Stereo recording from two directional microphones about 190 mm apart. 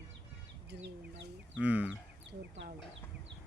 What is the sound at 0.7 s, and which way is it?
Bird, 60° right (ahead or behind).